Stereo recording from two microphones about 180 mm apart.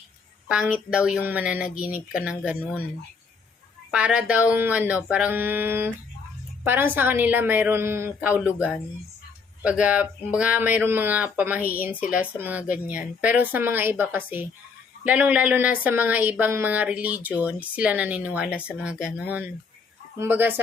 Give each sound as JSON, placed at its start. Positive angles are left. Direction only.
{"t": 0.4, "sound": "speech", "side_deg": -5}
{"t": 1.6, "sound": "speech", "side_deg": 50}
{"t": 2.1, "sound": "speech", "side_deg": -5}
{"t": 3.9, "sound": "speech", "side_deg": -5}
{"t": 9.6, "sound": "speech", "side_deg": -5}
{"t": 20.1, "sound": "speech", "side_deg": -10}